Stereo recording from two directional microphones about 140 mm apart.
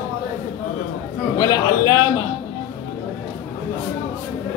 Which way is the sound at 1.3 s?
25° left (ahead or behind).